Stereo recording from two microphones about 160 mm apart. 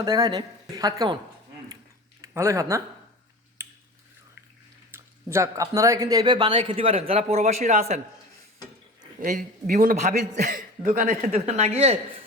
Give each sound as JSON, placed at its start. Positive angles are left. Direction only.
{"t": 0.0, "sound": "a woman's voice", "side_deg": -20}
{"t": 2.2, "sound": "speech", "side_deg": -15}
{"t": 3.6, "sound": "finger snapping", "side_deg": -15}
{"t": 4.9, "sound": "a man's voice", "side_deg": -15}
{"t": 9.2, "sound": "a man's voice", "side_deg": -55}
{"t": 11.3, "sound": "speech", "side_deg": -45}